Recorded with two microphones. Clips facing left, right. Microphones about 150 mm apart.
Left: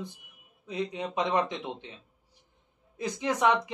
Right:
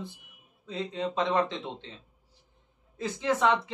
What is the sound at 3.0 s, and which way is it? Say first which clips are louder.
Speech: right 1 dB; 15° left (ahead or behind).